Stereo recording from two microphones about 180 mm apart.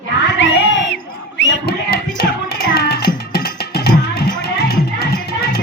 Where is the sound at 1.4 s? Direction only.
80° left.